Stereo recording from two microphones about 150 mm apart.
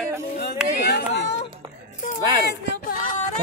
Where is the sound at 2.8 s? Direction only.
55° left (ahead or behind).